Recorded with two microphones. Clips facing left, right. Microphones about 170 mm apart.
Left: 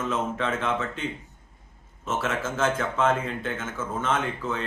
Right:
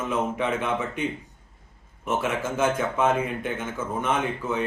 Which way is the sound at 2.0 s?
15° right (ahead or behind).